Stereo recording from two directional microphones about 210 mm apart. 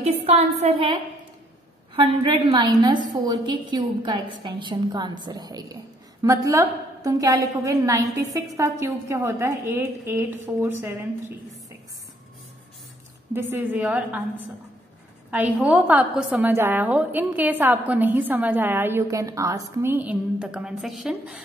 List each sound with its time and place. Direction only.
0.0 s a woman's voice: 30° right (ahead or behind)
2.0 s a woman's voice: 25° right (ahead or behind)
13.3 s a woman's voice: 10° right (ahead or behind)
15.3 s a woman's voice: 10° right (ahead or behind)